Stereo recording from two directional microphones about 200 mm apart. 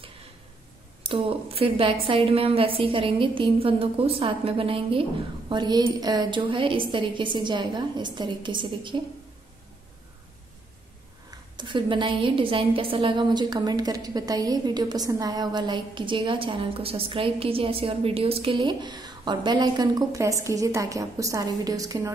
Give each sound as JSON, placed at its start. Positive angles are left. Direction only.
{"t": 1.0, "sound": "a woman's voice", "side_deg": -25}
{"t": 11.2, "sound": "a woman's voice", "side_deg": -25}